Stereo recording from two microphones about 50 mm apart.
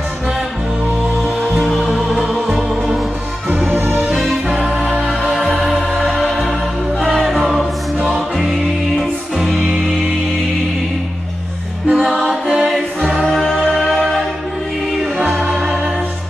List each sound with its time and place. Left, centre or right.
1.5 s music: centre
3.4 s music: right
7.3 s choir: centre
11.9 s music: centre
13.0 s choir: right
13.4 s music: centre